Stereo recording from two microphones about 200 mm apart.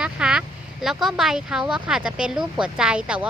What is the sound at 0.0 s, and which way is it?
Speech, 5° right (ahead or behind).